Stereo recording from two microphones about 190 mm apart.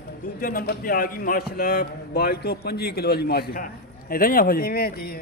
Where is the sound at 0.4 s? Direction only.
50° left (ahead or behind).